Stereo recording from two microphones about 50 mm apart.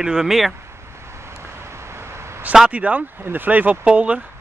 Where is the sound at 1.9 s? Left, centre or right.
Right.